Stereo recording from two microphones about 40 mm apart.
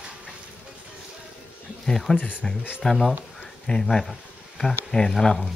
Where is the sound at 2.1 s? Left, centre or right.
Left.